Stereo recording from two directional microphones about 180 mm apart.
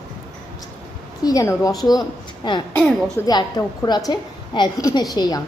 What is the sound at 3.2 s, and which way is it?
A woman's voice, 20° left (ahead or behind).